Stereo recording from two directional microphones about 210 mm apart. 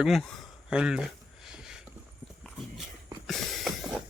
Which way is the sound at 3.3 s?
Centre (ahead or behind).